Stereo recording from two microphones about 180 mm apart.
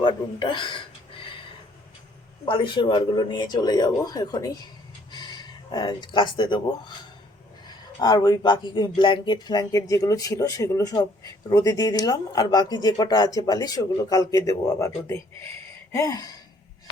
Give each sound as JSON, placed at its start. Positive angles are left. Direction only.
{"t": 0.0, "sound": "a sound", "side_deg": 25}
{"t": 2.5, "sound": "speech", "side_deg": 25}
{"t": 8.0, "sound": "speech", "side_deg": 25}